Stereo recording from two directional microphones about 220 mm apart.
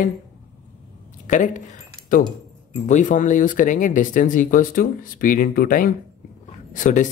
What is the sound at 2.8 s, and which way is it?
A woman's voice, 35° left (ahead or behind).